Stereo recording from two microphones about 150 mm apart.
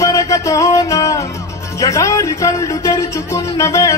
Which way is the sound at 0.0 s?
20° left (ahead or behind).